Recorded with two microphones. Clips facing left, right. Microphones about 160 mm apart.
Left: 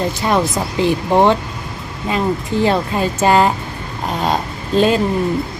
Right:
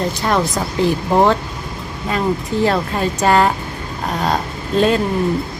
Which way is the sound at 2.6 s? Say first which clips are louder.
Left 1 dB; 5° left (ahead or behind).